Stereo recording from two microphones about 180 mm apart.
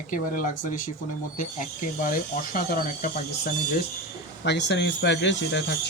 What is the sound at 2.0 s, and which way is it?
Speech, 50° left (ahead or behind).